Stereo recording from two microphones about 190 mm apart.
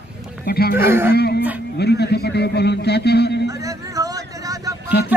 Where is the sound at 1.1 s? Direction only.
60° left (ahead or behind).